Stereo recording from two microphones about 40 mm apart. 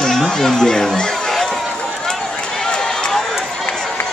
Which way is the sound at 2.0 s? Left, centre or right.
Centre.